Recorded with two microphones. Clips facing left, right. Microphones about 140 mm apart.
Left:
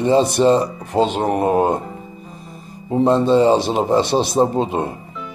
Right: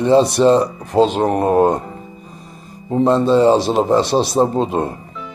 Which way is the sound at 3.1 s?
50° right (ahead or behind).